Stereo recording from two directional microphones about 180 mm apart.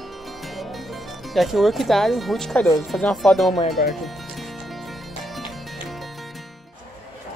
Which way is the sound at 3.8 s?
60° left (ahead or behind).